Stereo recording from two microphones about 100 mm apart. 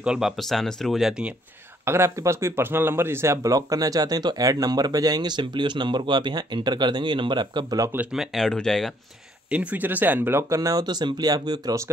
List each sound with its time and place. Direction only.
0.0 s speech: 10° right (ahead or behind)
0.4 s speech: 5° left (ahead or behind)
1.9 s speech: 25° right (ahead or behind); by 7.9 s 45° right (ahead or behind)
8.1 s speech: centre (ahead or behind)
9.5 s speech: 15° right (ahead or behind); by 11.9 s 35° right (ahead or behind)